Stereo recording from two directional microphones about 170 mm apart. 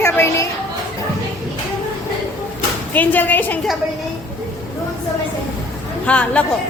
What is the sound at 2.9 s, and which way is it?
Speech, 10° left (ahead or behind).